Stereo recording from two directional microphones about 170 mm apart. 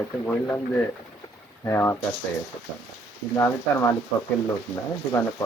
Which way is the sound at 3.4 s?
20° left (ahead or behind).